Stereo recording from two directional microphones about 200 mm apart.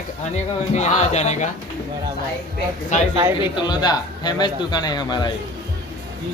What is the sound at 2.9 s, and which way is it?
Speech, 40° left (ahead or behind).